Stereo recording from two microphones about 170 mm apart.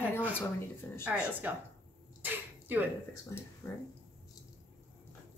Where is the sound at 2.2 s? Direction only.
10° right (ahead or behind).